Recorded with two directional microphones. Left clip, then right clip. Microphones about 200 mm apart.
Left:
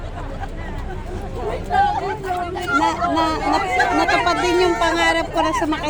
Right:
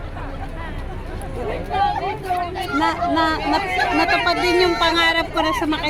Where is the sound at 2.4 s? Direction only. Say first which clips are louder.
Even; 45° left (ahead or behind).